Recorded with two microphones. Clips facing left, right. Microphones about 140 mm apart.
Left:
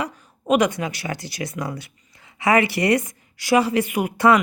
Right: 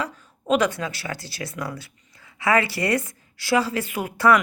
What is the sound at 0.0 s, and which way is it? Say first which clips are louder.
Speech: left 2 dB; 15° left (ahead or behind).